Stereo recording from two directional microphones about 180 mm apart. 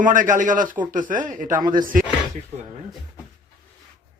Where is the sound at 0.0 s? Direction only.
45° right (ahead or behind).